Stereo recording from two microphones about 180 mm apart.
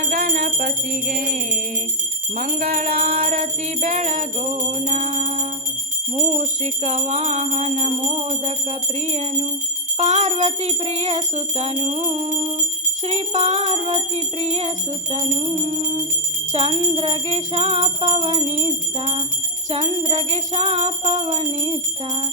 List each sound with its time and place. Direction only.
0.1 s music: 50° right (ahead or behind)
2.3 s jingle bell: 45° right (ahead or behind)